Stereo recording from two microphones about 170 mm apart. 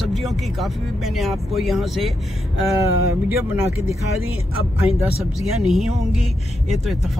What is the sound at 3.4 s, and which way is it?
Speech, 15° right (ahead or behind).